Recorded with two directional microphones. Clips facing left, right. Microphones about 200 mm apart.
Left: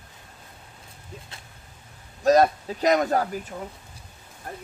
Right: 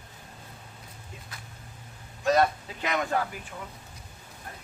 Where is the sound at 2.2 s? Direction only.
40° left (ahead or behind).